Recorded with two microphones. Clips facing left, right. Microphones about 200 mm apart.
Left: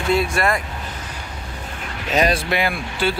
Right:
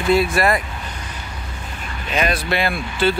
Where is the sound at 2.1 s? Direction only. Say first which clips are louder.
Left 3 dB; 35° left (ahead or behind).